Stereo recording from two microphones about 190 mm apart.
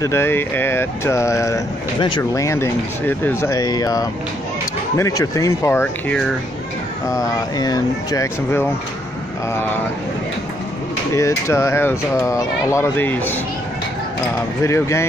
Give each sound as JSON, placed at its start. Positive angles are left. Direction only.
{"t": 0.0, "sound": "speech", "side_deg": 15}
{"t": 11.1, "sound": "speech", "side_deg": 15}
{"t": 14.6, "sound": "speech", "side_deg": 15}